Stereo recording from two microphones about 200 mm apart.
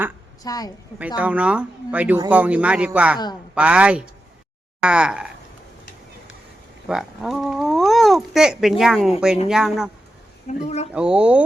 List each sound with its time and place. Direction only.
0.4 s a woman's voice: 20° left (ahead or behind)
0.9 s speech: 5° right (ahead or behind)
6.8 s speech: centre (ahead or behind)
10.5 s speech: 35° left (ahead or behind)
10.9 s speech: 5° right (ahead or behind)